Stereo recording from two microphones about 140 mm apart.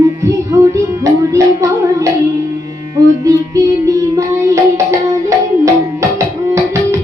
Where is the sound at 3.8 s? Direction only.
20° right (ahead or behind).